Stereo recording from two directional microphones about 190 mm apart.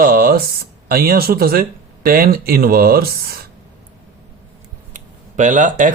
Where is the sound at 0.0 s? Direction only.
50° right (ahead or behind).